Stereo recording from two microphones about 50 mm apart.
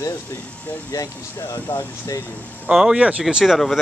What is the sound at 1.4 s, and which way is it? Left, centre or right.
Speech, left.